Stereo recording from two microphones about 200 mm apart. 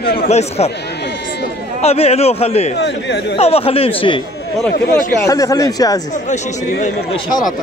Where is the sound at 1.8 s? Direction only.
30° left (ahead or behind).